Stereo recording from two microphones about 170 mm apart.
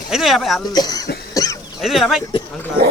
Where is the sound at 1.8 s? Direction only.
Centre (ahead or behind).